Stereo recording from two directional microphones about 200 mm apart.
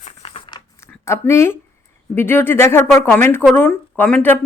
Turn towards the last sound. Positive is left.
turn(degrees=10)  # may be behind; listen again after turning